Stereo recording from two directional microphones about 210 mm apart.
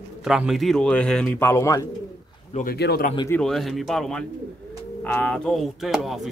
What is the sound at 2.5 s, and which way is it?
Speech, 45° left (ahead or behind).